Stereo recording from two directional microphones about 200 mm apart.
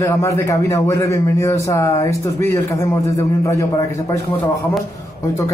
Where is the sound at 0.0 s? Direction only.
15° left (ahead or behind).